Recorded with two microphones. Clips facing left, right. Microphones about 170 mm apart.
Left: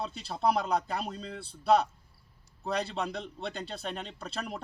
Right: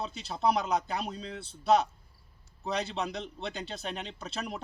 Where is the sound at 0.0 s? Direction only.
Centre (ahead or behind).